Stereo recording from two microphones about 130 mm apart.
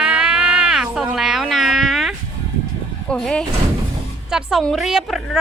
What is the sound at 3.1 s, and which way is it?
Speech, 5° left (ahead or behind).